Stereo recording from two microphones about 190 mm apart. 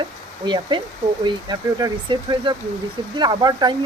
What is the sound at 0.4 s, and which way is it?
Speech, 25° right (ahead or behind).